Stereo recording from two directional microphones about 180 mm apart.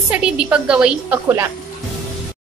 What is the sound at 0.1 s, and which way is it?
A woman's voice, 5° right (ahead or behind).